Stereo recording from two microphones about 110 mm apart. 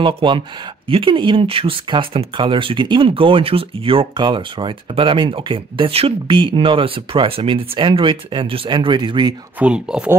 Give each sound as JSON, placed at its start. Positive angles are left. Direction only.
{"t": 0.0, "sound": "speech", "side_deg": -50}
{"t": 9.6, "sound": "speech", "side_deg": -10}